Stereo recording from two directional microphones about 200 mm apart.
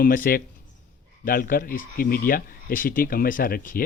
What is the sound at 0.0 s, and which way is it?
Speech, 45° left (ahead or behind).